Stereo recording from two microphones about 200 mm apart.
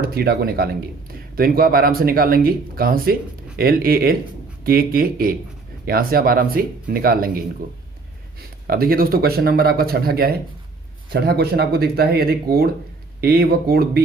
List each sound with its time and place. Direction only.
0.0 s speech: 50° right (ahead or behind)